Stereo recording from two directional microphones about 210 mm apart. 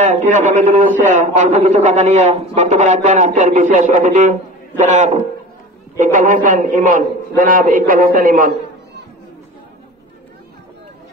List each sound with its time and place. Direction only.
0.0 s a man's voice: 35° right (ahead or behind)